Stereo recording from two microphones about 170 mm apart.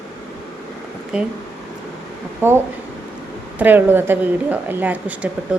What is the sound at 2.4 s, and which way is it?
Speech, 10° right (ahead or behind).